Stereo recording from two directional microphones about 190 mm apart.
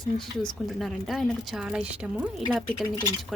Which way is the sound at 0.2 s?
Centre (ahead or behind).